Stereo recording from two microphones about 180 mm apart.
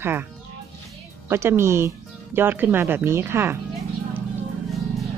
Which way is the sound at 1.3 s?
15° right (ahead or behind).